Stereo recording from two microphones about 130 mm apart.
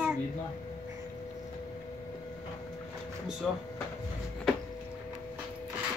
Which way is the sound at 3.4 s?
5° right (ahead or behind).